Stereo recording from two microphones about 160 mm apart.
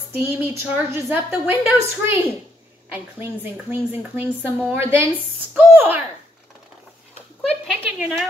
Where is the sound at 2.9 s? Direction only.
15° right (ahead or behind).